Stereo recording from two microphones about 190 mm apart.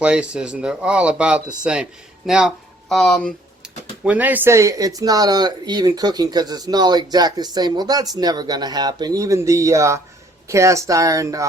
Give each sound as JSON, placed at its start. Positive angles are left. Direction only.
{"t": 0.0, "sound": "speech", "side_deg": -5}
{"t": 4.0, "sound": "speech", "side_deg": -10}